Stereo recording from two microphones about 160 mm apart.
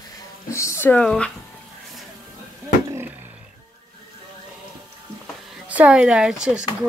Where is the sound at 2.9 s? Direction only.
15° right (ahead or behind).